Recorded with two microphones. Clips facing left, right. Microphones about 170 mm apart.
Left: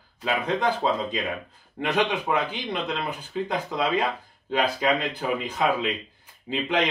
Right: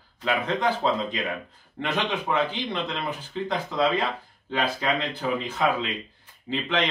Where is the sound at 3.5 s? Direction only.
15° left (ahead or behind).